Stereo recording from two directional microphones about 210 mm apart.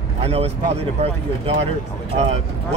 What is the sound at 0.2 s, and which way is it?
Speech, 30° right (ahead or behind).